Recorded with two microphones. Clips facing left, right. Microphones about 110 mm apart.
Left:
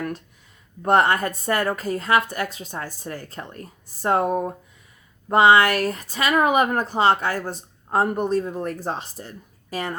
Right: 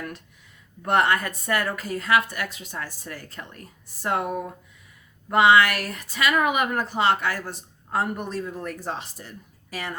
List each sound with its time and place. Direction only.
0.8 s speech: 35° left (ahead or behind)